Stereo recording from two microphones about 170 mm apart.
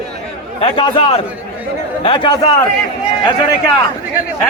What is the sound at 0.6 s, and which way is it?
A man's voice, 30° left (ahead or behind).